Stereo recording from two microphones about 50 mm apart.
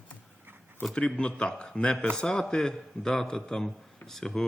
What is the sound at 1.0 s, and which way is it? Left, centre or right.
A man's voice, left.